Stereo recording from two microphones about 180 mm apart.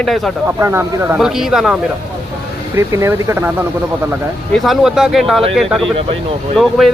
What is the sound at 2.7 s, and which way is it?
Speech, 15° right (ahead or behind).